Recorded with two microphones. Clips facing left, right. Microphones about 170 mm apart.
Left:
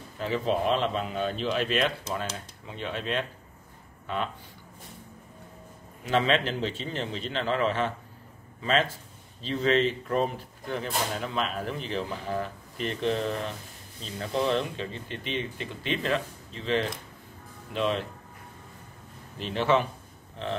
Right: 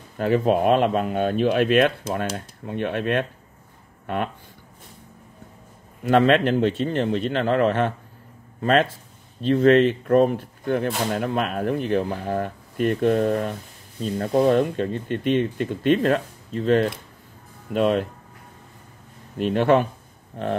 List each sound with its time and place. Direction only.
0.2 s speech: 55° right (ahead or behind)
6.0 s speech: 55° right (ahead or behind)
19.3 s speech: 50° right (ahead or behind)